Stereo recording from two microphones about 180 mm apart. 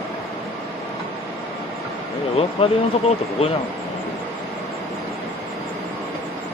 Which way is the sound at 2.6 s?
30° left (ahead or behind).